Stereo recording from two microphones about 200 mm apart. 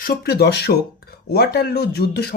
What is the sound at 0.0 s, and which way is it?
Speech, 50° left (ahead or behind).